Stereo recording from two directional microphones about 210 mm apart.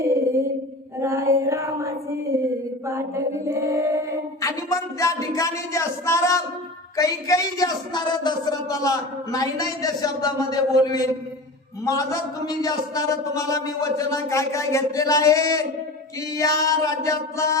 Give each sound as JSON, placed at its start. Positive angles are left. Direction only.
{"t": 0.0, "sound": "a sound", "side_deg": -15}
{"t": 0.9, "sound": "female singing", "side_deg": -15}
{"t": 2.8, "sound": "mantra", "side_deg": -15}
{"t": 4.4, "sound": "a man's voice", "side_deg": 15}